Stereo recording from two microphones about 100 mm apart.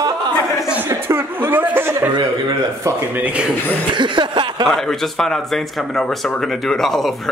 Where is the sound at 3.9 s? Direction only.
50° right (ahead or behind).